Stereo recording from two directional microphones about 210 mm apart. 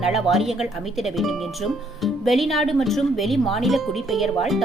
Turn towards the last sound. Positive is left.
turn(degrees=0)  # may be behind; listen again after turning